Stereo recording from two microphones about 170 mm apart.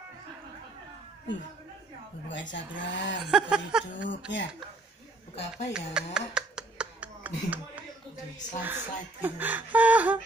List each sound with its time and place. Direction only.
2.2 s speech: 90° left
3.3 s a sound: 5° right (ahead or behind)
4.3 s speech: 90° left
5.3 s speech: 40° left (ahead or behind)
5.7 s a sound: 5° right (ahead or behind)
8.6 s speech: 10° right (ahead or behind)